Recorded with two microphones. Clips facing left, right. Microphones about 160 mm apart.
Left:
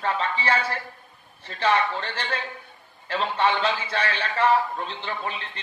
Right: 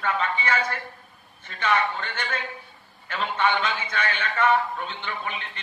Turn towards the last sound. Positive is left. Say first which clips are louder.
# left 1 dB
turn(degrees=35)  # may be behind; listen again after turning